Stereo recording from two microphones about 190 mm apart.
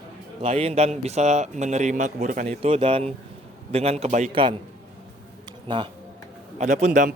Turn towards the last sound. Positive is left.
turn(degrees=-40)  # may be behind; listen again after turning